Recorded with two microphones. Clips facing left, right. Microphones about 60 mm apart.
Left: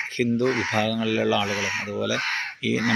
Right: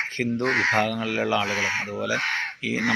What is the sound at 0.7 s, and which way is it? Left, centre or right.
Speech, right.